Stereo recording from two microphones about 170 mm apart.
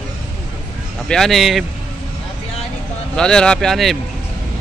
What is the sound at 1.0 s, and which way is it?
Speech, 5° left (ahead or behind).